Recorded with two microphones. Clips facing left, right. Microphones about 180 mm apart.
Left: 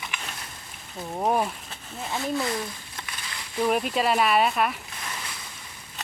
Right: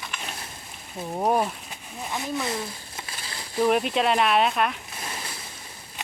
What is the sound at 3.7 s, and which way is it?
Speech, centre (ahead or behind).